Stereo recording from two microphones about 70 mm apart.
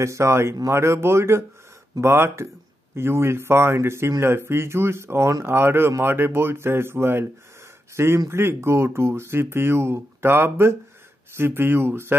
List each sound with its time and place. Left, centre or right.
0.0 s speech: right